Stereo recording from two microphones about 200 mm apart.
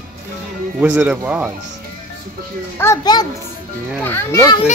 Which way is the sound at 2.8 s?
15° left (ahead or behind).